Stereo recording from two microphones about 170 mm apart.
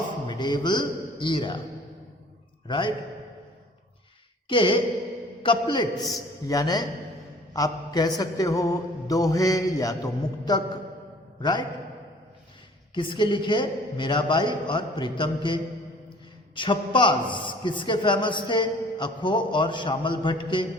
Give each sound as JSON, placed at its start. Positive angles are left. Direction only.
{"t": 0.3, "sound": "a man's voice", "side_deg": 25}
{"t": 2.6, "sound": "a man's voice", "side_deg": 30}
{"t": 4.4, "sound": "a man's voice", "side_deg": 30}
{"t": 12.9, "sound": "a man's voice", "side_deg": 30}